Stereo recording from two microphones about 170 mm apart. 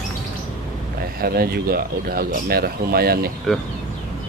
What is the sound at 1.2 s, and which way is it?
Speech, 65° right (ahead or behind).